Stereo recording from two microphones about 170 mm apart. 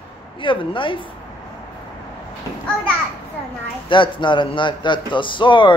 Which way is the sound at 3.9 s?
30° left (ahead or behind).